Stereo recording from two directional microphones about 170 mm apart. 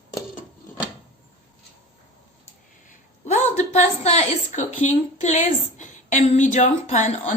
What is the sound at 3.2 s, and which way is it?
A woman's voice, 40° left (ahead or behind).